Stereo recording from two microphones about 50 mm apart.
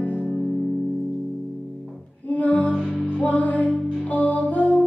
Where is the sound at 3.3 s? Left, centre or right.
Left.